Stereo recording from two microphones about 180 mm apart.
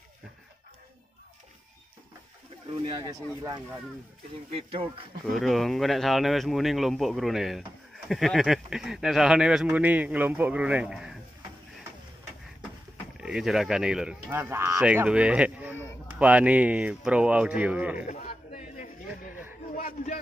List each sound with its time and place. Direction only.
3.0 s speech: 25° right (ahead or behind)
5.3 s speech: centre (ahead or behind)
13.2 s speech: 5° right (ahead or behind)
18.0 s a sound: 45° left (ahead or behind)